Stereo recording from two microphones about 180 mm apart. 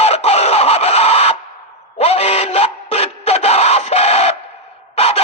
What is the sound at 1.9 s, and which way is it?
Music, 35° left (ahead or behind).